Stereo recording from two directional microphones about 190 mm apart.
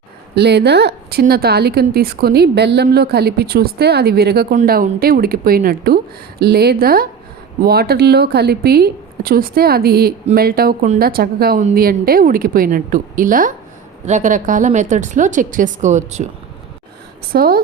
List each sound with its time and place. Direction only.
0.3 s a woman's voice: 60° right (ahead or behind); by 16.2 s 40° right (ahead or behind)
17.3 s a woman's voice: 50° right (ahead or behind)